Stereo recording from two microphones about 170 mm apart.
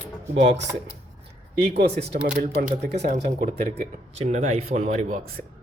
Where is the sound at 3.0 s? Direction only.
40° right (ahead or behind).